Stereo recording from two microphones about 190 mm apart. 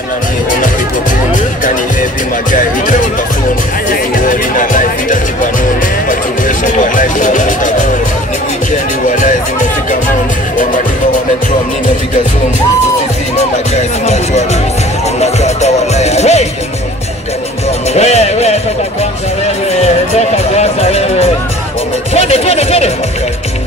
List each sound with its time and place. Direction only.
1.3 s music: 45° left (ahead or behind)
3.9 s speech: 45° left (ahead or behind)
9.0 s speech: 40° left (ahead or behind)
13.4 s speech: 35° left (ahead or behind)
17.9 s speech: 35° left (ahead or behind)
19.7 s speech: 35° left (ahead or behind)